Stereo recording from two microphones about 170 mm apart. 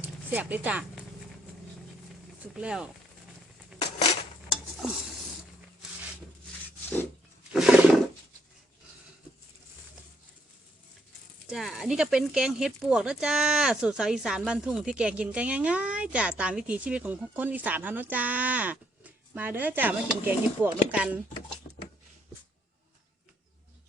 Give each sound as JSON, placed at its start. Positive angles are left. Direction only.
{"t": 0.0, "sound": "zipper", "side_deg": -10}
{"t": 2.5, "sound": "speech", "side_deg": -5}
{"t": 3.8, "sound": "a sound", "side_deg": 35}
{"t": 7.5, "sound": "roaring cats", "side_deg": -5}
{"t": 11.4, "sound": "speech", "side_deg": -5}